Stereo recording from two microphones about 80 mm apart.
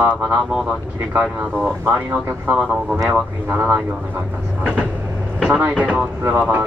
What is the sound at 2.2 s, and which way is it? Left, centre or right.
Speech, right.